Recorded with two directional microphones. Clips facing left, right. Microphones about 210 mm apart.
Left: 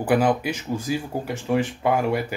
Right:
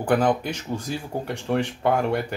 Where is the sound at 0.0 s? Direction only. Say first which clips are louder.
Left 1 dB; 5° left (ahead or behind).